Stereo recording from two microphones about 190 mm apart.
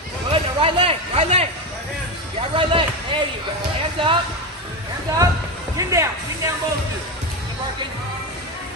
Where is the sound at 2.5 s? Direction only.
25° right (ahead or behind).